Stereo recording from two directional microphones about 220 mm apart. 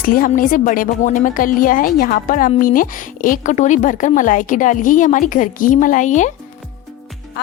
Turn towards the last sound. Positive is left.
turn(degrees=35)  # may be behind; listen again after turning